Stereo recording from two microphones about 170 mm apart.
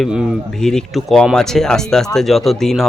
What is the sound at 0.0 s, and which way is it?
Speech, centre (ahead or behind).